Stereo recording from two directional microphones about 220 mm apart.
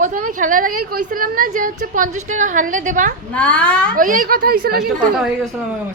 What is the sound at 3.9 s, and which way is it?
Speech, 40° right (ahead or behind).